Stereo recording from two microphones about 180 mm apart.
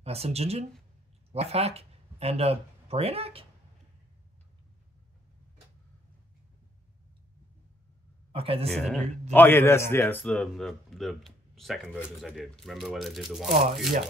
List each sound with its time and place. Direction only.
0.0 s speech: 35° right (ahead or behind)
8.3 s speech: 30° right (ahead or behind)
8.6 s a man's voice: 5° left (ahead or behind)